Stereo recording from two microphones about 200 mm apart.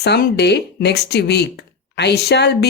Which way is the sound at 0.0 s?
55° left (ahead or behind).